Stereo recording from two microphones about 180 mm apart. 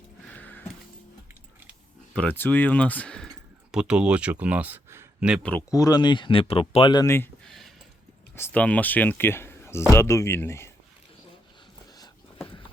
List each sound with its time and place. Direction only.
0.3 s music: 10° left (ahead or behind)
2.1 s speech: 10° left (ahead or behind)
3.7 s speech: 5° right (ahead or behind)
5.4 s speech: 10° left (ahead or behind)
5.7 s speech: 20° left (ahead or behind)
7.4 s a sound: centre (ahead or behind)
8.4 s speech: 10° left (ahead or behind)